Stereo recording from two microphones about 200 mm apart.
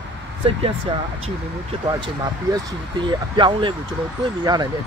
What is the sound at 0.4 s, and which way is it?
Speech, 30° right (ahead or behind).